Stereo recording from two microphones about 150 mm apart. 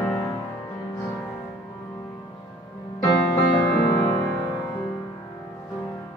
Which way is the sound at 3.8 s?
20° left (ahead or behind).